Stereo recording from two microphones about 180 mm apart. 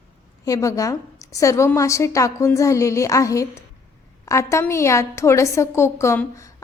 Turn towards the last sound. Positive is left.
turn(degrees=15)  # may be behind; listen again after turning